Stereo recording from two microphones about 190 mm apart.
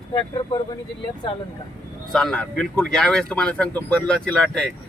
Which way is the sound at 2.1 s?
5° left (ahead or behind).